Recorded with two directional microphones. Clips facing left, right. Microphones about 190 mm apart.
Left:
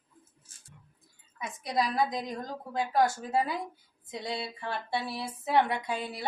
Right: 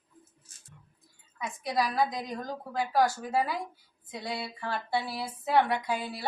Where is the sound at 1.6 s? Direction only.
20° left (ahead or behind).